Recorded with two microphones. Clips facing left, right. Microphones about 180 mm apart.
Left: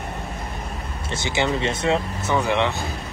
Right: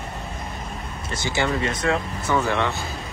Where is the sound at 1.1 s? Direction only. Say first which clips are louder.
Left 1 dB; 25° left (ahead or behind).